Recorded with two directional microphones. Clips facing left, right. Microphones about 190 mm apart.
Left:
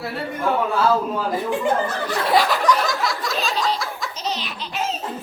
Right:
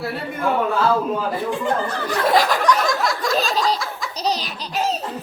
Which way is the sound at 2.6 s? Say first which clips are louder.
Right 1 dB; centre (ahead or behind).